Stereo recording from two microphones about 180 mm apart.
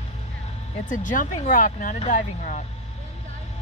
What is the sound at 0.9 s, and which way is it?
Speech, 45° left (ahead or behind).